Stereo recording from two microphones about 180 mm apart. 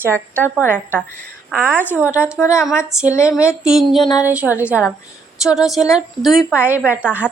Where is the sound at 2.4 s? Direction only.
15° left (ahead or behind).